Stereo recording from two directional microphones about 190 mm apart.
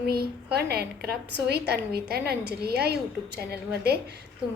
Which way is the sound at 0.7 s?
55° right (ahead or behind).